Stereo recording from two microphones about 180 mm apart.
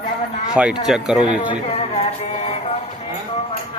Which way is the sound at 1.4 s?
35° left (ahead or behind).